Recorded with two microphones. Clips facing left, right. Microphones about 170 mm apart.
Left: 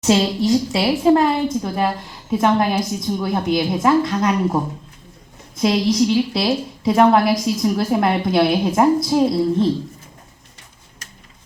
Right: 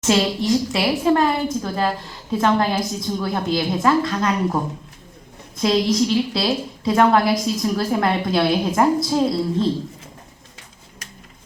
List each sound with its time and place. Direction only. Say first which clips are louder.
0.0 s a woman's voice: left 2 dB; 25° left (ahead or behind)